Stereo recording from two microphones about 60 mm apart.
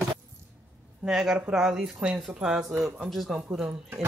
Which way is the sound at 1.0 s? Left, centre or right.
Centre.